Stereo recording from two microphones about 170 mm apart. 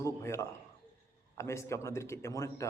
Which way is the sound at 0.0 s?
15° left (ahead or behind).